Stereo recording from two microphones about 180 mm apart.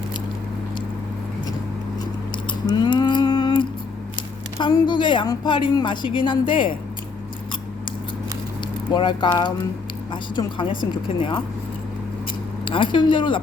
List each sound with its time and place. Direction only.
2.5 s a sound: 25° left (ahead or behind)
4.5 s a woman's voice: 20° left (ahead or behind)
8.9 s a woman's voice: 25° left (ahead or behind)
12.6 s a woman's voice: 25° left (ahead or behind)